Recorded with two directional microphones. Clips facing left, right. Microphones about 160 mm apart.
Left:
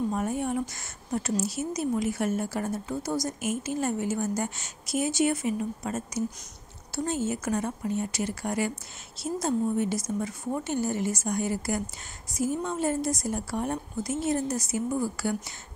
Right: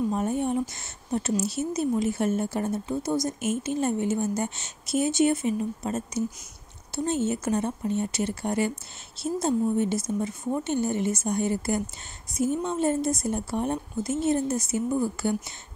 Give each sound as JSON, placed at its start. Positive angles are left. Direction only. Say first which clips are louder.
{"t": 0.1, "sound": "a woman's voice", "louder": "right 3 dB", "side_deg": -25}